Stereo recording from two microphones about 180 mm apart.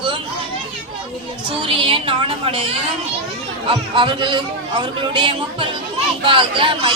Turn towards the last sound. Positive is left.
turn(degrees=-30)  # may be behind; listen again after turning